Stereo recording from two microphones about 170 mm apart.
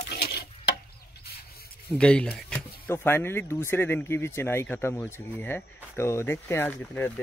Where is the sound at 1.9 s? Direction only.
5° left (ahead or behind).